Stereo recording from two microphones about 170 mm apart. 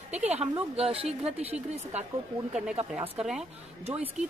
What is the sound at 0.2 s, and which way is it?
Speech, 10° right (ahead or behind).